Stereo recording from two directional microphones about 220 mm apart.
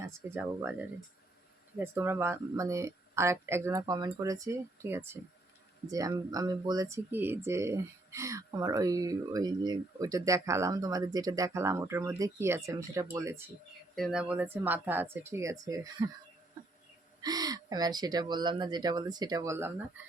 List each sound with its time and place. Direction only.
0.0 s speech: 10° right (ahead or behind)
13.9 s speech: centre (ahead or behind)
17.2 s speech: 15° right (ahead or behind)